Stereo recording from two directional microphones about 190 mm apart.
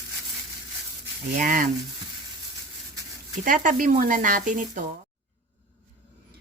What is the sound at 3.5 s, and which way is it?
Speech, 45° right (ahead or behind).